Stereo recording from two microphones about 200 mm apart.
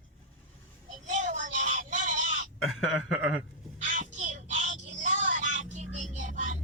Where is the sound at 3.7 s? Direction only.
40° right (ahead or behind).